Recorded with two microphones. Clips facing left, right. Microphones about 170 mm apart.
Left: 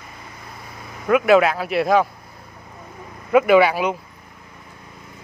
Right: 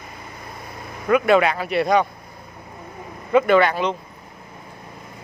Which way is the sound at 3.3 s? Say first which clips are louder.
Left 2 dB; 5° left (ahead or behind).